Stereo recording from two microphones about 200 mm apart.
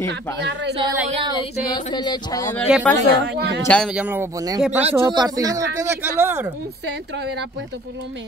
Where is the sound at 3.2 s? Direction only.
60° right (ahead or behind).